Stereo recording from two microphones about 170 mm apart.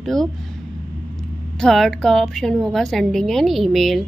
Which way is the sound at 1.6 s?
Centre (ahead or behind).